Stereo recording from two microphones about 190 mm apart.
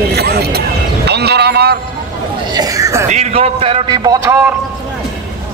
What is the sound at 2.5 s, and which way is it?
Speech, 20° right (ahead or behind).